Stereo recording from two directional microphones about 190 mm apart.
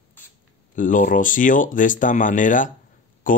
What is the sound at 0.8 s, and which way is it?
Speech, 45° left (ahead or behind).